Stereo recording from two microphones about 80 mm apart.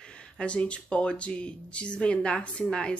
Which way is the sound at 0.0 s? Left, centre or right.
Centre.